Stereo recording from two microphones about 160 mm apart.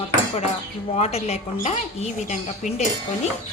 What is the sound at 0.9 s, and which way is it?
Speech, 40° left (ahead or behind).